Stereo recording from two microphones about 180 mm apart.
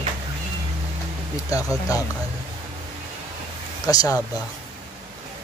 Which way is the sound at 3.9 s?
20° left (ahead or behind).